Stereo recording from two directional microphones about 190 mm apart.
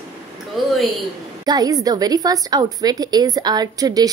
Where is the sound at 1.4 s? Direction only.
20° right (ahead or behind).